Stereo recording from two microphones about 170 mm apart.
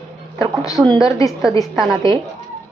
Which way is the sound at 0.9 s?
20° left (ahead or behind).